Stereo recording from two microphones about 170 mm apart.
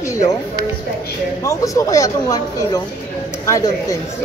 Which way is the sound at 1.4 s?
20° left (ahead or behind).